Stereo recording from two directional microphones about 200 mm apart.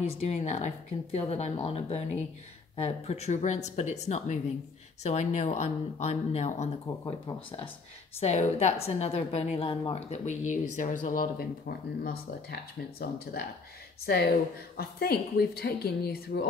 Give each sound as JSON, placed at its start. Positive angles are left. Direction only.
{"t": 0.0, "sound": "a woman's voice", "side_deg": 30}
{"t": 8.2, "sound": "a woman's voice", "side_deg": 35}